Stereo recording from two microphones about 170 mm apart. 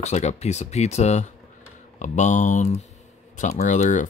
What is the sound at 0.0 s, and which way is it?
Speech, 40° left (ahead or behind).